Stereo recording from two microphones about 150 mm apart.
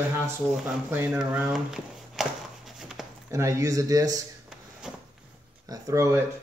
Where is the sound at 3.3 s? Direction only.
20° right (ahead or behind).